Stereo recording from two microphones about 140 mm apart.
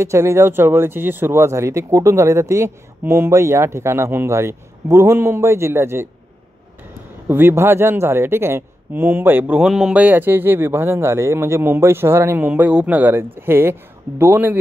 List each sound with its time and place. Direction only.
0.0 s speech: 20° right (ahead or behind)
7.2 s a man's voice: 15° right (ahead or behind)